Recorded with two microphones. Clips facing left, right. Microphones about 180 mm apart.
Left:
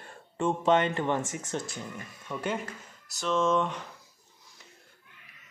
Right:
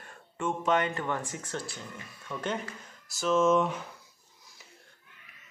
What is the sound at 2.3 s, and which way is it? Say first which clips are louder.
Speech: left 1 dB; 10° left (ahead or behind).